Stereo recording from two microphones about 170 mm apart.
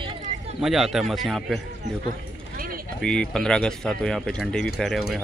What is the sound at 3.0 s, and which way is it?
Speech, 5° left (ahead or behind).